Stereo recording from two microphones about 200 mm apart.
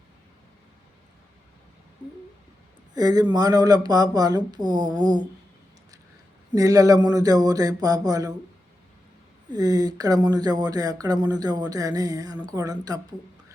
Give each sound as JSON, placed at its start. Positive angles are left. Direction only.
{"t": 2.9, "sound": "speech", "side_deg": -20}
{"t": 6.5, "sound": "speech", "side_deg": -15}
{"t": 9.5, "sound": "speech", "side_deg": -20}